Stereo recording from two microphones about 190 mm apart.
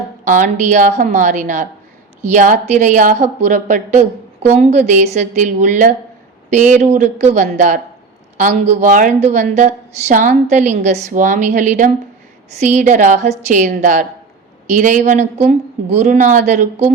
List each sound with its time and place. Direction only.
0.3 s a woman's voice: 40° right (ahead or behind)